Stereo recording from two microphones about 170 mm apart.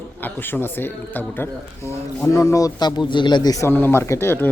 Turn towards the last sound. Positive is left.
turn(degrees=15)  # may be behind; listen again after turning